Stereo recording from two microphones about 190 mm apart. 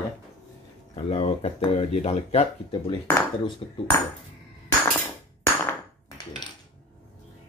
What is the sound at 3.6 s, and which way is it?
Ping, 20° left (ahead or behind).